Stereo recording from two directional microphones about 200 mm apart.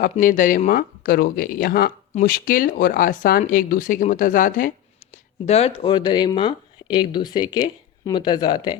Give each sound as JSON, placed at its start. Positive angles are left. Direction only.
{"t": 0.0, "sound": "speech", "side_deg": 40}